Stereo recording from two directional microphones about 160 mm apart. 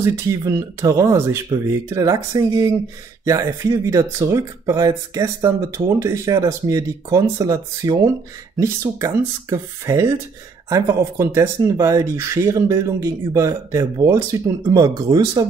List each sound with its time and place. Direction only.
0.0 s speech: 20° right (ahead or behind)